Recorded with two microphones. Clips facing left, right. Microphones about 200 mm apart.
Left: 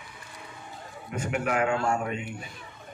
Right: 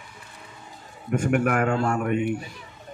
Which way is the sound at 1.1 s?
50° right (ahead or behind).